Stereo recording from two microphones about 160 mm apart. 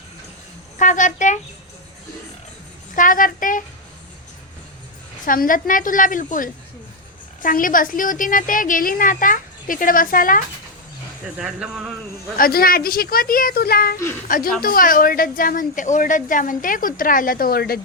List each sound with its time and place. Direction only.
0.8 s speech: 50° left (ahead or behind)
2.9 s a woman's voice: 55° left (ahead or behind)
5.2 s speech: 60° left (ahead or behind)
7.4 s speech: 60° left (ahead or behind)
11.3 s speech: 5° right (ahead or behind)
12.4 s a woman's voice: 65° left (ahead or behind)